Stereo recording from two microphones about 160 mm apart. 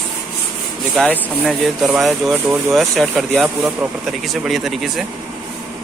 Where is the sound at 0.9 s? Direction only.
5° left (ahead or behind).